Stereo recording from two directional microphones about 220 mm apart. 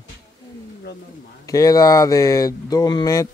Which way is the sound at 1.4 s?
15° left (ahead or behind).